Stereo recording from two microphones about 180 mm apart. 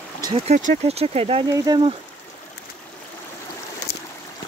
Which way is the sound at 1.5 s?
20° right (ahead or behind).